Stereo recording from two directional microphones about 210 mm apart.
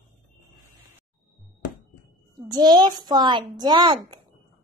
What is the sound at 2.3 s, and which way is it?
A child's voice, 20° right (ahead or behind).